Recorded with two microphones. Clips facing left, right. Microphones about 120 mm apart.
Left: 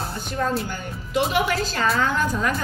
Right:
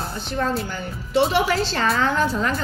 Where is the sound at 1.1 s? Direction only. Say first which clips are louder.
Right 3 dB; 30° right (ahead or behind).